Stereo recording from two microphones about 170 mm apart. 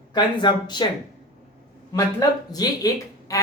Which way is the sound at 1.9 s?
20° left (ahead or behind).